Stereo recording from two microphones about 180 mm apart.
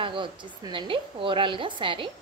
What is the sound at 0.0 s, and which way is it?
A woman's voice, 25° right (ahead or behind).